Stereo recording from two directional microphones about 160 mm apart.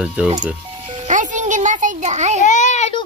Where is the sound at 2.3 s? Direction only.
50° left (ahead or behind).